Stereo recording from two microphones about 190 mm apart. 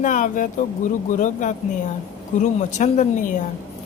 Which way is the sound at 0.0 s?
45° left (ahead or behind).